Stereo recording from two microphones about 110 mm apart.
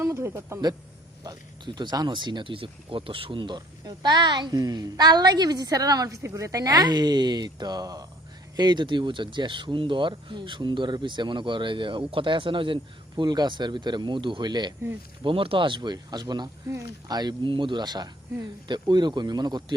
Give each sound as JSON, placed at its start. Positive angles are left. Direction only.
{"t": 0.0, "sound": "speech", "side_deg": -25}
{"t": 1.2, "sound": "speech", "side_deg": -40}
{"t": 15.2, "sound": "speech", "side_deg": -55}
{"t": 16.6, "sound": "speech", "side_deg": -30}